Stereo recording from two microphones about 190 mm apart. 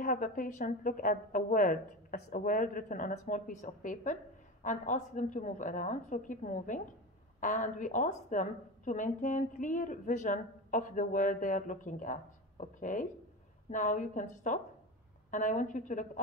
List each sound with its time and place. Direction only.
0.0 s a woman's voice: 45° left (ahead or behind)